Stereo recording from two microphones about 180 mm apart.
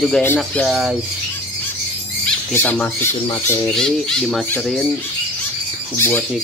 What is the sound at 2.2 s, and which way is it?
Speech, 10° left (ahead or behind).